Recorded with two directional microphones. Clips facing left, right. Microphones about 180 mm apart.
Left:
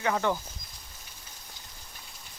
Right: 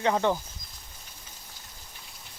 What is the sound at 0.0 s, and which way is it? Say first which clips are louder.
Speech: right 3 dB; 20° right (ahead or behind).